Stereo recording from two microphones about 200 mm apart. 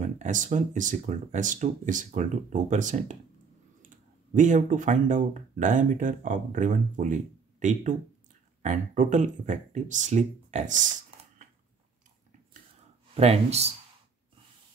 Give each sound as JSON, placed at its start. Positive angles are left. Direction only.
{"t": 0.0, "sound": "speech", "side_deg": -40}
{"t": 13.1, "sound": "speech", "side_deg": -30}